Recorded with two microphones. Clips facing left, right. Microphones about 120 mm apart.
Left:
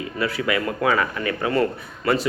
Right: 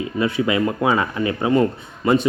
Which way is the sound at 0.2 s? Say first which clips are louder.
Right 4 dB; 20° right (ahead or behind).